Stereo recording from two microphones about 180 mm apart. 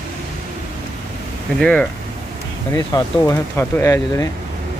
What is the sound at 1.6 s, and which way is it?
Speech, 5° left (ahead or behind).